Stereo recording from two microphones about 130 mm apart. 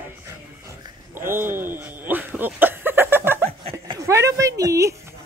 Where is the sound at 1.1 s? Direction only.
20° right (ahead or behind).